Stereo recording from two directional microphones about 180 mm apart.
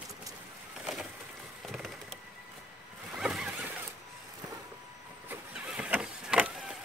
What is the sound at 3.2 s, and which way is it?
Zipper, 5° right (ahead or behind).